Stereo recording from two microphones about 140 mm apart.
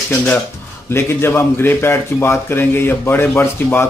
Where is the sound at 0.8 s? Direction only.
15° left (ahead or behind).